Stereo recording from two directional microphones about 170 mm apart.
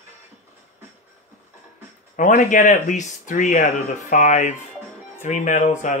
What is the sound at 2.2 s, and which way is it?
Speech, 50° left (ahead or behind).